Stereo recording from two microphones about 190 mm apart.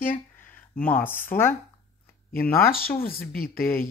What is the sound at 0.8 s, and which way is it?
Speech, 10° left (ahead or behind).